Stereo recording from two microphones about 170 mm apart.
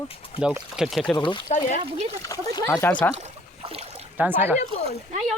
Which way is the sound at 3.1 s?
35° right (ahead or behind).